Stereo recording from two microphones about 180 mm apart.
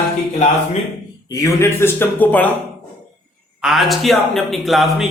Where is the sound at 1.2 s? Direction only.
20° left (ahead or behind).